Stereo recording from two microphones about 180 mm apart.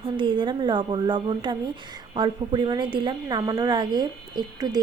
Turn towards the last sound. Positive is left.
turn(degrees=-25)  # may be behind; listen again after turning